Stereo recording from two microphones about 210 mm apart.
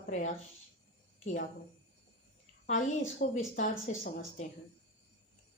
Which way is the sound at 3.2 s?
35° left (ahead or behind).